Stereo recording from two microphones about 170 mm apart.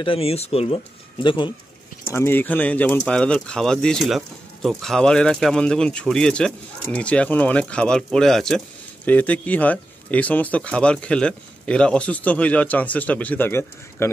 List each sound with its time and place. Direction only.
0.0 s speech: 35° left (ahead or behind)
2.1 s speech: 10° left (ahead or behind)